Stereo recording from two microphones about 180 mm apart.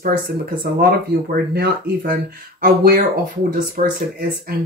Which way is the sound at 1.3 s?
60° right (ahead or behind).